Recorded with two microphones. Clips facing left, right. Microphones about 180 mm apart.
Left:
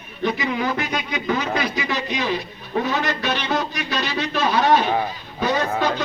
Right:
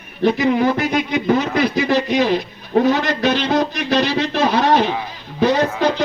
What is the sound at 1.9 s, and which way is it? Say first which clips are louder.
Speech: right 10 dB; 60° right (ahead or behind).